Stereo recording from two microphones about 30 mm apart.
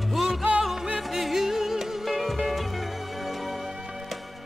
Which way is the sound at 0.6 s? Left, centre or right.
Centre.